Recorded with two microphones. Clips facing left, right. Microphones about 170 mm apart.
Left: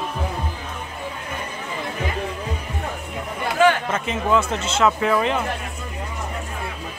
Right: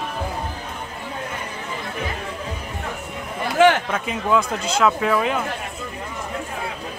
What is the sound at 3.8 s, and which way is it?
A man's voice, centre (ahead or behind).